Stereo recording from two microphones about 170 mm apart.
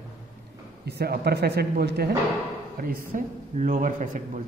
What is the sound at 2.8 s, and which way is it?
A man's voice, 55° right (ahead or behind).